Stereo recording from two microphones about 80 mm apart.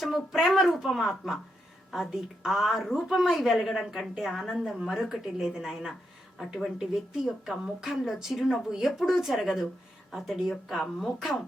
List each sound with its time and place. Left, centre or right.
0.0 s a woman's voice: centre